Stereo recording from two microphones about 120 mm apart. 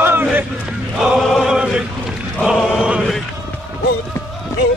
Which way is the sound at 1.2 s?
Centre (ahead or behind).